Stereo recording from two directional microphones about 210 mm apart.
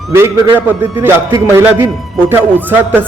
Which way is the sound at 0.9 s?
10° right (ahead or behind).